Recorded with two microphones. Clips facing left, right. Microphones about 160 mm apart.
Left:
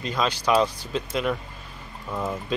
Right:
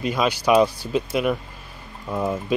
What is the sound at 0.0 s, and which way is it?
Speech, 10° right (ahead or behind).